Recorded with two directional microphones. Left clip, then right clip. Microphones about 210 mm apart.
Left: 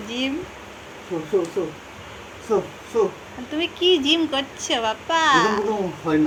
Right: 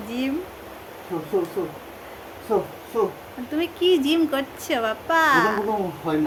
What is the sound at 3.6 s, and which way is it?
Speech, 75° right (ahead or behind).